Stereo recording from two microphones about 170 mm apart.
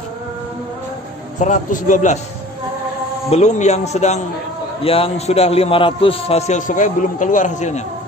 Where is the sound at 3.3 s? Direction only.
40° left (ahead or behind).